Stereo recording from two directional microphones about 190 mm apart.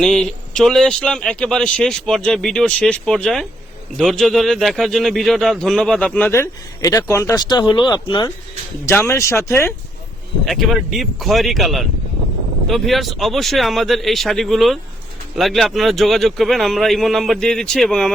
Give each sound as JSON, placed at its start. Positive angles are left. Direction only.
{"t": 0.0, "sound": "a man's voice", "side_deg": 0}
{"t": 10.4, "sound": "a man's voice", "side_deg": 0}